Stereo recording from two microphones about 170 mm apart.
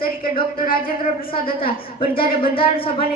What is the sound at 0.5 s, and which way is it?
Speech, 55° left (ahead or behind).